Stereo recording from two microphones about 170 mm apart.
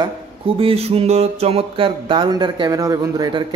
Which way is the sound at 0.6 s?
35° right (ahead or behind).